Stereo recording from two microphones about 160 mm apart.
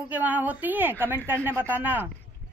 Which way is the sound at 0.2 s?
10° right (ahead or behind).